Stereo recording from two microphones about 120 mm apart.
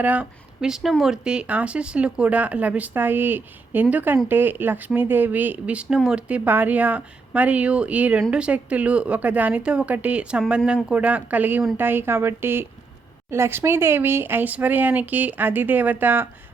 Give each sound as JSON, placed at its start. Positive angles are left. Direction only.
{"t": 0.0, "sound": "speech", "side_deg": -10}